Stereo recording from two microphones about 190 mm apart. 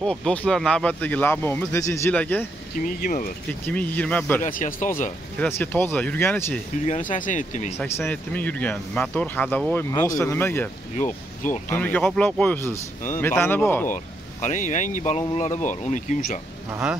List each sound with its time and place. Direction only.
0.0 s speech: 5° left (ahead or behind)
3.0 s speech: 50° left (ahead or behind)
3.6 s speech: 10° left (ahead or behind)
4.4 s speech: 45° left (ahead or behind)
5.4 s speech: 10° left (ahead or behind)
6.9 s speech: 45° left (ahead or behind)
7.7 s speech: 10° left (ahead or behind)
11.7 s speech: 10° left (ahead or behind)
13.8 s speech: 40° left (ahead or behind)